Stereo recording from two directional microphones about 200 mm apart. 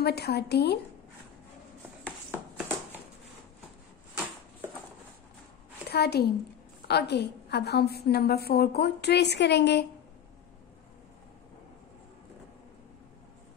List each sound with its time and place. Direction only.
0.0 s a woman's voice: 55° left (ahead or behind)
5.9 s a woman's voice: 55° left (ahead or behind)